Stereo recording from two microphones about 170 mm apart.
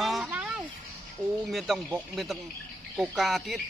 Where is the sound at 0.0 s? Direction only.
5° right (ahead or behind).